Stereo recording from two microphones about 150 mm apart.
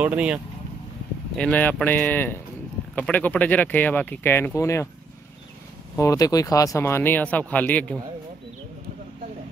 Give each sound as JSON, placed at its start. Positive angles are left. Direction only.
{"t": 0.0, "sound": "speech", "side_deg": -10}
{"t": 1.3, "sound": "speech", "side_deg": 10}
{"t": 5.9, "sound": "speech", "side_deg": 20}